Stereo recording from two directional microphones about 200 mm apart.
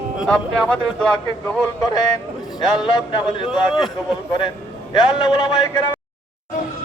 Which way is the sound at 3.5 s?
Centre (ahead or behind).